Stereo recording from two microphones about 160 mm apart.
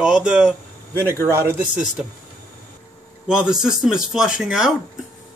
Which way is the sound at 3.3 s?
5° right (ahead or behind).